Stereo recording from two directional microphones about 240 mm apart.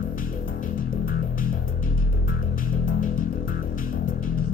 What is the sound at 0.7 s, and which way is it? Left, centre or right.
Music, left.